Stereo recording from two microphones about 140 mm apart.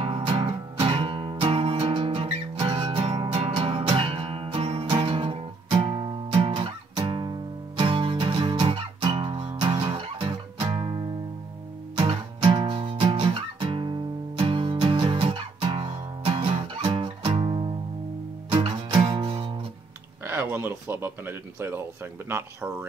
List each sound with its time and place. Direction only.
0.0 s music: 40° right (ahead or behind)
20.2 s speech: 15° right (ahead or behind)